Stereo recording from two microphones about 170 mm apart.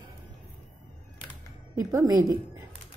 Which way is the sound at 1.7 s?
20° right (ahead or behind).